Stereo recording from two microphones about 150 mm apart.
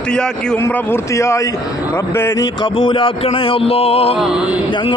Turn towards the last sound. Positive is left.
turn(degrees=-5)  # may be behind; listen again after turning